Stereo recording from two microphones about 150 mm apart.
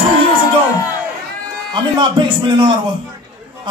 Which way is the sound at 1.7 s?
30° right (ahead or behind).